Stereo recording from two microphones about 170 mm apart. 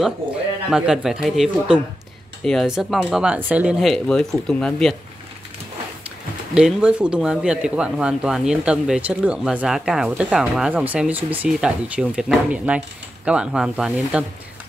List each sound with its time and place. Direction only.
0.7 s speech: 5° right (ahead or behind)
6.5 s speech: 5° right (ahead or behind)